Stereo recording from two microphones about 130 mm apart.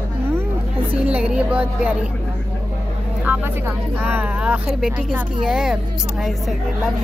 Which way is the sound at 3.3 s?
15° right (ahead or behind).